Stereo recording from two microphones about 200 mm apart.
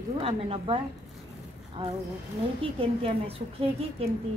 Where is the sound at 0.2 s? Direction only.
30° right (ahead or behind).